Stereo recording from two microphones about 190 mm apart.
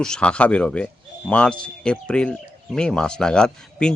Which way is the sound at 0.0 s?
5° left (ahead or behind).